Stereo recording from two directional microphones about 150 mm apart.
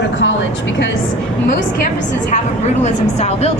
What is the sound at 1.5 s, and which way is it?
Speech, 60° left (ahead or behind).